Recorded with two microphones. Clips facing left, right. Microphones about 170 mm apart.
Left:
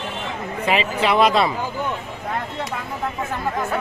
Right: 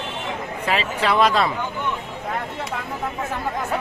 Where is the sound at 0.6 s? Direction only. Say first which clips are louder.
Left 3 dB; 10° left (ahead or behind).